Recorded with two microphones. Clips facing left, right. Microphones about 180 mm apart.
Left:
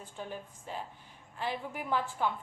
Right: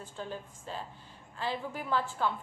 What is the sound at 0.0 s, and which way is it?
A woman's voice, 15° left (ahead or behind).